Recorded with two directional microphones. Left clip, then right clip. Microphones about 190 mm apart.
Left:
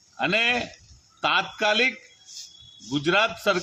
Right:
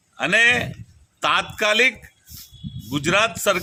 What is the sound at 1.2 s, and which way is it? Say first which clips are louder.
Speech: right 3 dB; 20° right (ahead or behind).